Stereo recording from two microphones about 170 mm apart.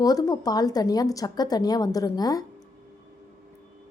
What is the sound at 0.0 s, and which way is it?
A woman's voice, 20° left (ahead or behind).